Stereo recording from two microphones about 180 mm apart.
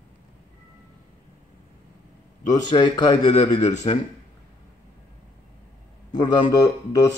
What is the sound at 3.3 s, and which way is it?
Speech, 40° left (ahead or behind).